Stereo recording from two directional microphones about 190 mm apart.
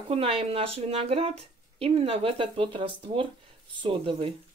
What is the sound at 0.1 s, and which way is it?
Speech, 30° right (ahead or behind).